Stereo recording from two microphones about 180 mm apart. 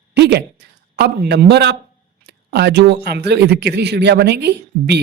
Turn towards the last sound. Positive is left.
turn(degrees=-70)  # may be behind; listen again after turning